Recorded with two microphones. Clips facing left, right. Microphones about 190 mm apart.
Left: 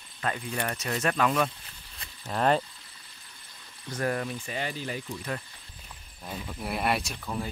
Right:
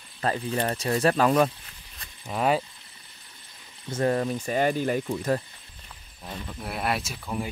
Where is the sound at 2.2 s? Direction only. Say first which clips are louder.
Right 1 dB; 5° right (ahead or behind).